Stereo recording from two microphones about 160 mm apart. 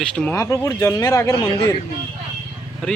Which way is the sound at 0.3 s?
20° left (ahead or behind).